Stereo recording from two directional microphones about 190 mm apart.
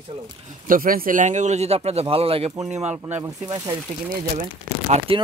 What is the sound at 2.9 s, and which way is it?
Speech, 10° right (ahead or behind).